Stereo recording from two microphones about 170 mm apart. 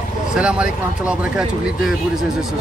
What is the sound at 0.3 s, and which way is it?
Speech, 5° right (ahead or behind).